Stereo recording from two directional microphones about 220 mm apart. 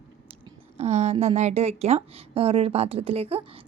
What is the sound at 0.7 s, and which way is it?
A woman's voice, 30° right (ahead or behind).